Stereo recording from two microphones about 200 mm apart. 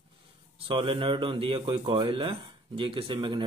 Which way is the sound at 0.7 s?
25° right (ahead or behind).